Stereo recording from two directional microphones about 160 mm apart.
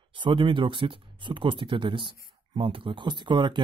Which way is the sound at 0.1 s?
30° right (ahead or behind).